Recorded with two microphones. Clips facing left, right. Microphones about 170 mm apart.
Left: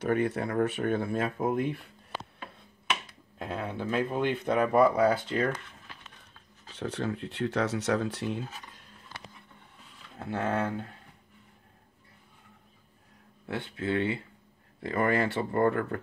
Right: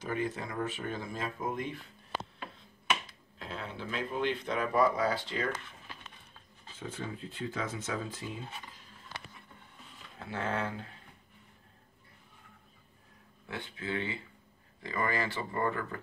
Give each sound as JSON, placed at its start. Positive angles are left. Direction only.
{"t": 0.0, "sound": "speech", "side_deg": 70}
{"t": 3.3, "sound": "speech", "side_deg": 55}
{"t": 6.7, "sound": "speech", "side_deg": 75}
{"t": 10.1, "sound": "speech", "side_deg": 50}
{"t": 13.5, "sound": "speech", "side_deg": 65}